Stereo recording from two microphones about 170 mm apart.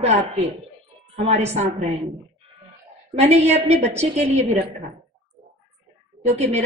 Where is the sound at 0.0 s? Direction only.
40° right (ahead or behind).